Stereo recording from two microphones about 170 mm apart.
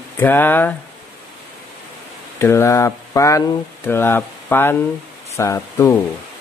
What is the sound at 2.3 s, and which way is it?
Speech, 15° left (ahead or behind).